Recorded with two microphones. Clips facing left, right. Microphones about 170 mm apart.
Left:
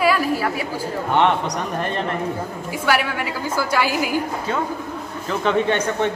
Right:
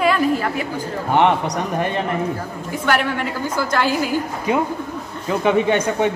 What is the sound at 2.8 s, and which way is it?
A woman's voice, 5° left (ahead or behind).